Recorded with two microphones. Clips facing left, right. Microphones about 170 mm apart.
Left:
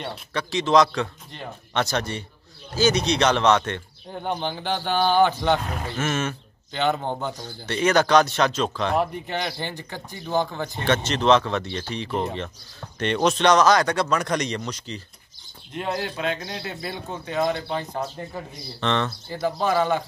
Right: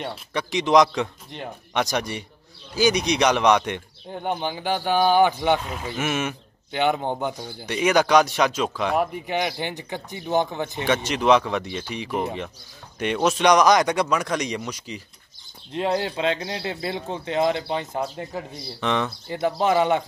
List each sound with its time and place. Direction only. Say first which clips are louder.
0.0 s speech: right 1 dB; 15° right (ahead or behind)
15.7 s speech: right 4 dB; 25° right (ahead or behind)
19.2 s speech: right 2 dB; 20° right (ahead or behind)